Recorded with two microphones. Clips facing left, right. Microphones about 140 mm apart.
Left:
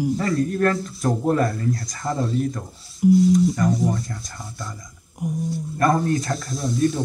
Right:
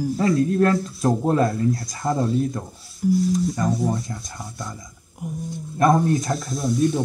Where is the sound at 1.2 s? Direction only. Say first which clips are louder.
Even; 25° right (ahead or behind).